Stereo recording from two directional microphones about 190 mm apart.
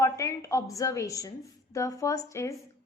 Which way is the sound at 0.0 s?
15° left (ahead or behind).